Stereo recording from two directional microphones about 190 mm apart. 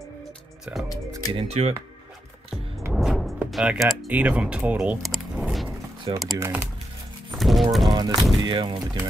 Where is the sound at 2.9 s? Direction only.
Centre (ahead or behind).